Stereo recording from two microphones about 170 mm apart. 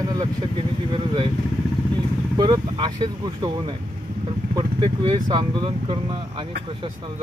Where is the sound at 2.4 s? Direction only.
25° right (ahead or behind).